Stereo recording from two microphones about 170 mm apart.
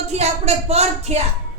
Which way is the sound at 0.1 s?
40° right (ahead or behind).